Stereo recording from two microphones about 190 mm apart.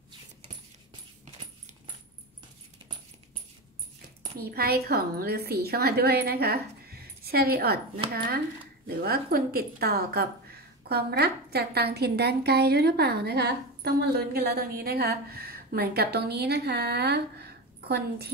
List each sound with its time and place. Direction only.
4.4 s a woman's voice: 55° right (ahead or behind)
8.8 s a woman's voice: 55° right (ahead or behind)